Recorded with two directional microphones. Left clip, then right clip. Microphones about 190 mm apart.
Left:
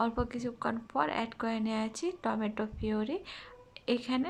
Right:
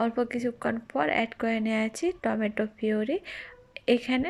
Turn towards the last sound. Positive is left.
turn(degrees=-10)  # may be behind; listen again after turning